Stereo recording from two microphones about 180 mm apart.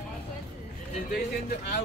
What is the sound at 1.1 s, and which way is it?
Speech, 60° left (ahead or behind).